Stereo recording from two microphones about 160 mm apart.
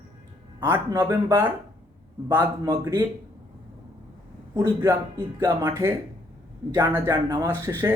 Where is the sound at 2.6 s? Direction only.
15° right (ahead or behind).